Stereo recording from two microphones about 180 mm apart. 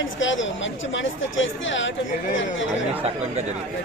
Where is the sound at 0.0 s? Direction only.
90° left.